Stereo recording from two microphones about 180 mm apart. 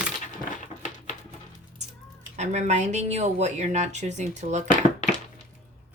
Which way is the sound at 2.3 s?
40° right (ahead or behind).